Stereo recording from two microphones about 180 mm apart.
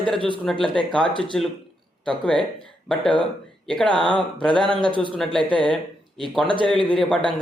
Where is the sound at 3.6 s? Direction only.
5° left (ahead or behind).